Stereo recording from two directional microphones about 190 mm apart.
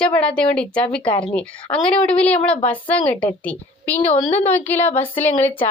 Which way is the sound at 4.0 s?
35° left (ahead or behind).